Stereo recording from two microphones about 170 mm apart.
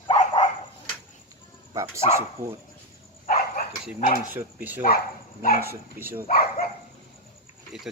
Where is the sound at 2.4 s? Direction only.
15° right (ahead or behind).